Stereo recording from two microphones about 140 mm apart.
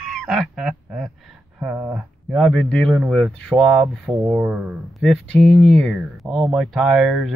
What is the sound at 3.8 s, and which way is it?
Speech, 10° right (ahead or behind).